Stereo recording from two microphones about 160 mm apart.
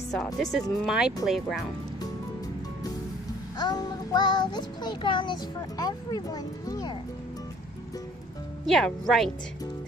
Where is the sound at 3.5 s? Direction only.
25° left (ahead or behind).